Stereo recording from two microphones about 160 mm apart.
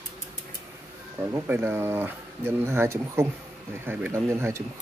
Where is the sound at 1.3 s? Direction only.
15° right (ahead or behind).